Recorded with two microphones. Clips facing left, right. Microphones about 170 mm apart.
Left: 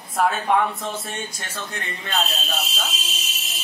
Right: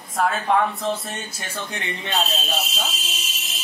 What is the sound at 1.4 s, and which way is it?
Speech, 15° right (ahead or behind).